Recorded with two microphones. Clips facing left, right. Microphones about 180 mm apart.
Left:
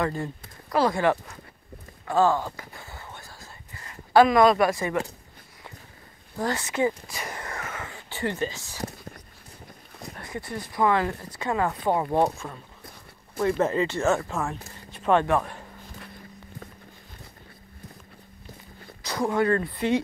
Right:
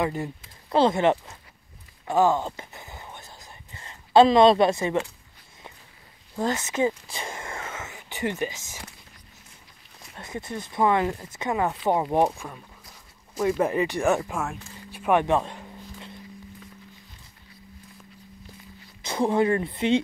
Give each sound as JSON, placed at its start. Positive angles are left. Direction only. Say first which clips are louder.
{"t": 0.0, "sound": "speech", "louder": "right 1 dB", "side_deg": -15}
{"t": 2.0, "sound": "whispering", "louder": "right 1 dB", "side_deg": -20}
{"t": 6.3, "sound": "speech", "louder": "right 1 dB", "side_deg": -20}
{"t": 10.1, "sound": "speech", "louder": "right 1 dB", "side_deg": -20}
{"t": 13.6, "sound": "speech", "louder": "even", "side_deg": -15}
{"t": 14.9, "sound": "a sound", "louder": "even", "side_deg": -10}
{"t": 19.0, "sound": "speech", "louder": "right 2 dB", "side_deg": -25}